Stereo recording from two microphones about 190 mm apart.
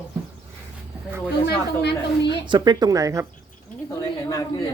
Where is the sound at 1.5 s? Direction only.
60° left (ahead or behind).